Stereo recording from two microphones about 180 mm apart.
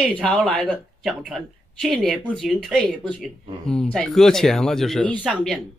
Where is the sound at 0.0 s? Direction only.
5° left (ahead or behind).